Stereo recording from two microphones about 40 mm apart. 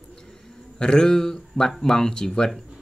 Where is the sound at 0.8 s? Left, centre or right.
Centre.